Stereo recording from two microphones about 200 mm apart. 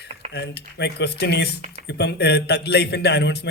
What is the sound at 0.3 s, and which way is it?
A man's voice, 55° left (ahead or behind).